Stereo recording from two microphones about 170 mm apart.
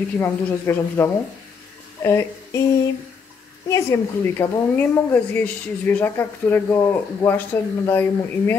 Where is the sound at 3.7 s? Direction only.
15° left (ahead or behind).